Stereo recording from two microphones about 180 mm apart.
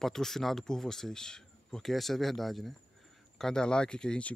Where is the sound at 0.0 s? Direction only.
Centre (ahead or behind).